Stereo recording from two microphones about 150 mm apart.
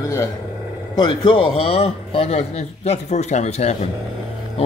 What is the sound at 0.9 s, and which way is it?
A man's voice, 30° left (ahead or behind).